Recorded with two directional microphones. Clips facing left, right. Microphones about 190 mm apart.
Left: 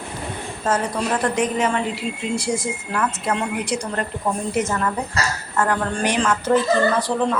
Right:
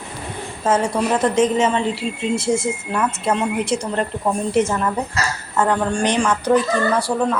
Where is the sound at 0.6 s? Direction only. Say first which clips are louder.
Right 4 dB; 20° right (ahead or behind).